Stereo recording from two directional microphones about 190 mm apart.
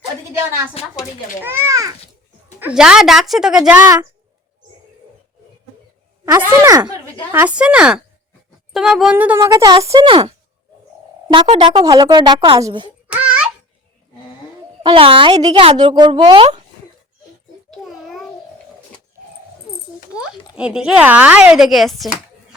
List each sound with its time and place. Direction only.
0.8 s speech: 35° left (ahead or behind)
1.5 s speech: 15° right (ahead or behind)
6.2 s a woman's voice: 15° right (ahead or behind)
13.1 s a sound: 5° right (ahead or behind)
14.8 s a woman's voice: 30° right (ahead or behind)
17.8 s a sound: centre (ahead or behind)
20.6 s speech: 5° right (ahead or behind)